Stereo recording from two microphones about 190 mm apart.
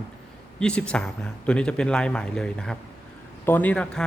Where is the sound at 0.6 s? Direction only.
5° left (ahead or behind).